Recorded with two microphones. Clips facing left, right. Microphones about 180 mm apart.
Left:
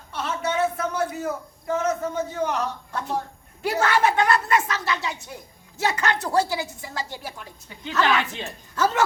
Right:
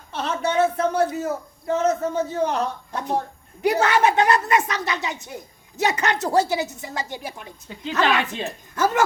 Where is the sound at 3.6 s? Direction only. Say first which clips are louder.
Right 3 dB; 20° right (ahead or behind).